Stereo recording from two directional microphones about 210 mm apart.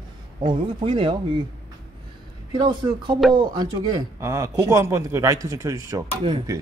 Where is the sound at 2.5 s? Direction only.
20° right (ahead or behind).